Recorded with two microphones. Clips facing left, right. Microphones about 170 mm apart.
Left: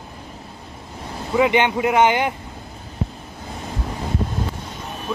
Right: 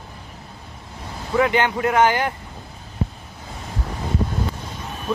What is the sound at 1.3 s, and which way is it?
Speech, 15° left (ahead or behind).